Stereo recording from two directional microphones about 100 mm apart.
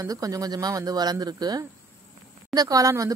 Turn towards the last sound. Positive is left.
turn(degrees=-35)  # may be behind; listen again after turning